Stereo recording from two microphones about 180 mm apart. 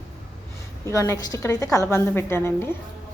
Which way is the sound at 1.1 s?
15° left (ahead or behind).